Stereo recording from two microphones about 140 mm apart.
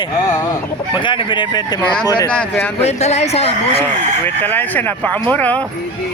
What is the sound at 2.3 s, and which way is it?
Speech, 10° left (ahead or behind).